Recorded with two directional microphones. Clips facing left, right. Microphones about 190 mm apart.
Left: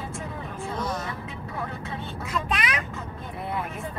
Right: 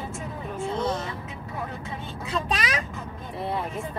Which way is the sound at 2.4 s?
35° right (ahead or behind).